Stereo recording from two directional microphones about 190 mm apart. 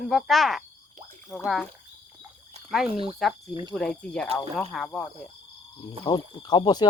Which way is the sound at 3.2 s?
Centre (ahead or behind).